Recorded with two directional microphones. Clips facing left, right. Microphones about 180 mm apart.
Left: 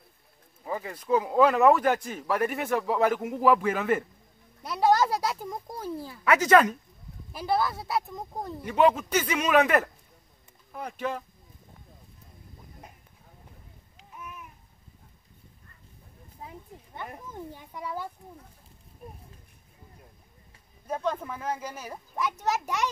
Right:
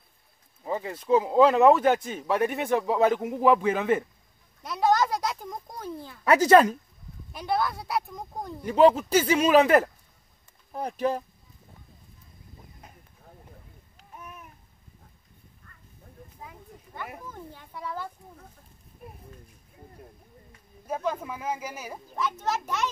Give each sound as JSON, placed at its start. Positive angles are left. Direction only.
{"t": 0.7, "sound": "speech", "side_deg": -25}
{"t": 4.6, "sound": "a child's voice", "side_deg": 5}
{"t": 6.2, "sound": "speech", "side_deg": -35}
{"t": 7.3, "sound": "speech", "side_deg": 0}
{"t": 8.6, "sound": "speech", "side_deg": -30}
{"t": 14.1, "sound": "babbling", "side_deg": -40}
{"t": 17.3, "sound": "a child's voice", "side_deg": 15}
{"t": 20.8, "sound": "speech", "side_deg": -5}
{"t": 22.1, "sound": "a child's voice", "side_deg": 15}